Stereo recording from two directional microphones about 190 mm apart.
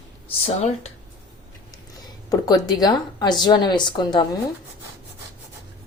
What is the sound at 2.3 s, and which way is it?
A woman's voice, 20° left (ahead or behind).